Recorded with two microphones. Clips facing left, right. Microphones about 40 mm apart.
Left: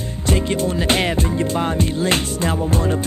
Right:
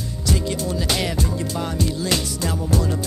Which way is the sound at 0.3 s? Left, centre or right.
Left.